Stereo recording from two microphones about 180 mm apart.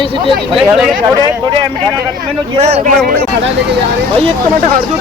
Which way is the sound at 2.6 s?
35° right (ahead or behind).